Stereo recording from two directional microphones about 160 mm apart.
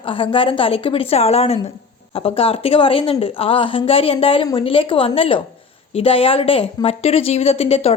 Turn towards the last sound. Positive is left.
turn(degrees=40)  # may be behind; listen again after turning